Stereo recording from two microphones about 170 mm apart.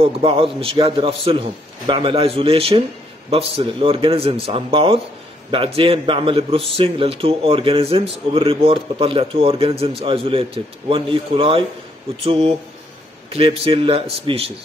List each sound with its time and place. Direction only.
0.0 s a man's voice: 30° right (ahead or behind)